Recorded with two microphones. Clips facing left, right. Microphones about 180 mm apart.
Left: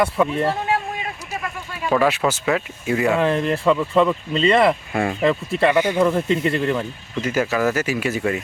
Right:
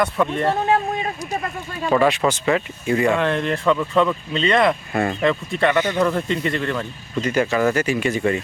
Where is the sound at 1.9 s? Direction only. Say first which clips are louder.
Right 1 dB; 5° left (ahead or behind).